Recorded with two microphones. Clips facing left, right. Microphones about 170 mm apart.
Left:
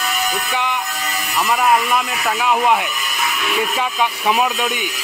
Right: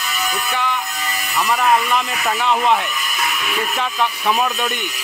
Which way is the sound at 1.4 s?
10° left (ahead or behind).